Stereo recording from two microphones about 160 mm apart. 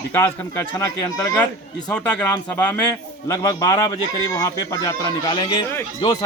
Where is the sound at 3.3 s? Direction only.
25° left (ahead or behind).